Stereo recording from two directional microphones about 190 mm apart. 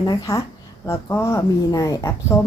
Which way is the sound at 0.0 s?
15° left (ahead or behind).